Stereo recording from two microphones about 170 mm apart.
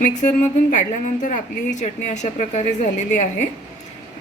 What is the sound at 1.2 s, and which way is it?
A woman's voice, 45° left (ahead or behind).